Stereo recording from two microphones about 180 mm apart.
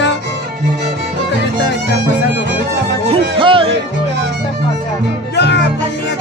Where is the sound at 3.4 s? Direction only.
30° right (ahead or behind).